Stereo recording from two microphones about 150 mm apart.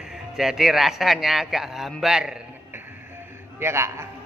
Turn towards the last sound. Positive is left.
turn(degrees=-15)  # may be behind; listen again after turning